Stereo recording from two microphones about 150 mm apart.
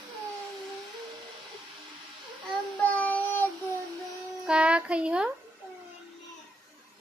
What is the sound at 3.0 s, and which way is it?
Child singing, 10° left (ahead or behind).